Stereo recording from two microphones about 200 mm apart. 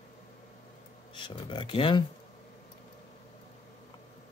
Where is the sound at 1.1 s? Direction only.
25° left (ahead or behind).